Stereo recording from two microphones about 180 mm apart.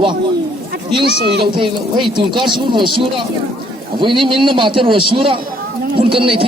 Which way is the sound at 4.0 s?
25° right (ahead or behind).